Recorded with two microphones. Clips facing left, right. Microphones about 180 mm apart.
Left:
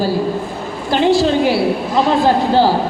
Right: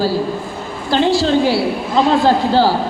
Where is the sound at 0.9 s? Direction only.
20° left (ahead or behind).